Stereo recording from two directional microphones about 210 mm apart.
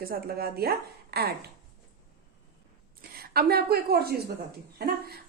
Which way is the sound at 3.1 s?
45° right (ahead or behind).